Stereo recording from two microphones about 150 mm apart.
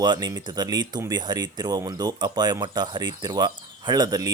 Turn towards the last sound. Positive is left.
turn(degrees=-25)  # may be behind; listen again after turning